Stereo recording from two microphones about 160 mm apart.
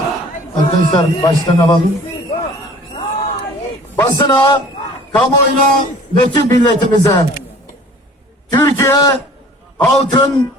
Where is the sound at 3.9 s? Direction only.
20° left (ahead or behind).